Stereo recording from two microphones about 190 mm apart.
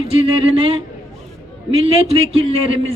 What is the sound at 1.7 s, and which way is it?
A man's voice, 30° right (ahead or behind).